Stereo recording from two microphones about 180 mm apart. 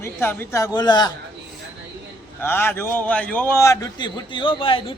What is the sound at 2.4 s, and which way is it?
A man's voice, 10° left (ahead or behind).